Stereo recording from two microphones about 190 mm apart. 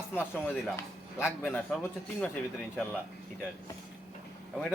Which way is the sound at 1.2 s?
10° left (ahead or behind).